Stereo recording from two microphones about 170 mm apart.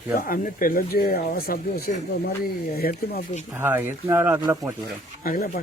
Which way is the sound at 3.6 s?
15° right (ahead or behind).